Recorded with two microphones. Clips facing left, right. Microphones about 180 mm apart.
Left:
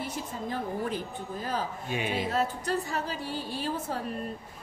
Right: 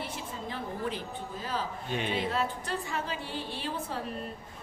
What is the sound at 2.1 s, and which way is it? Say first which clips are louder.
Speech: left 2 dB; 40° left (ahead or behind).